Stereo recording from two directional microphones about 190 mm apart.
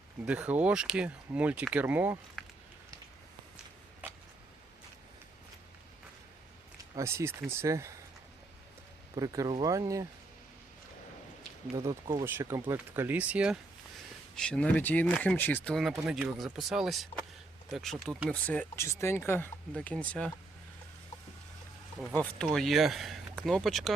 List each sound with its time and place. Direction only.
0.3 s speech: 5° right (ahead or behind)
2.4 s a sound: centre (ahead or behind)
4.0 s a sound: 10° right (ahead or behind)
6.9 s speech: 15° right (ahead or behind)
9.1 s speech: 15° right (ahead or behind)
11.8 s speech: 15° right (ahead or behind)
14.3 s speech: 5° left (ahead or behind)
18.3 s speech: 10° left (ahead or behind)
22.5 s speech: centre (ahead or behind)